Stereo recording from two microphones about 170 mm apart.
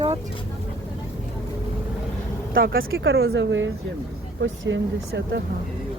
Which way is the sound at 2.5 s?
60° right (ahead or behind).